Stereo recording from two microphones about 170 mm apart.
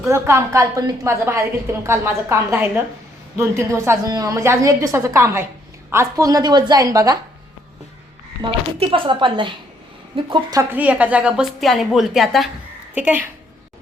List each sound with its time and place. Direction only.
0.0 s a woman's voice: 15° right (ahead or behind)
8.4 s a woman's voice: 30° right (ahead or behind); by 13.2 s 10° right (ahead or behind)